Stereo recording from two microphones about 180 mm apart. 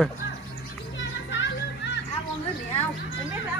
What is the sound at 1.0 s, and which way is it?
Children playing, 85° left.